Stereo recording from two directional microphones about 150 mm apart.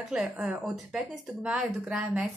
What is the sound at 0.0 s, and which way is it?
A woman's voice, 5° right (ahead or behind).